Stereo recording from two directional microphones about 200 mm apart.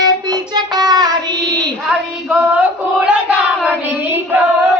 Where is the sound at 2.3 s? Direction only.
5° right (ahead or behind).